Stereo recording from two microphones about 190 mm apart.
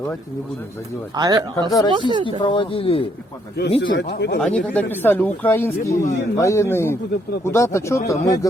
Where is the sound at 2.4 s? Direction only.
25° left (ahead or behind).